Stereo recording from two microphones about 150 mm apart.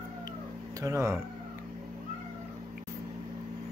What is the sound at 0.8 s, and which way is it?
Speech, 20° right (ahead or behind).